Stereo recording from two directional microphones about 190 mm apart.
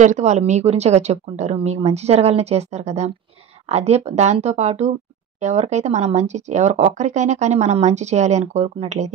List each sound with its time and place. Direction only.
0.0 s speech: 40° right (ahead or behind)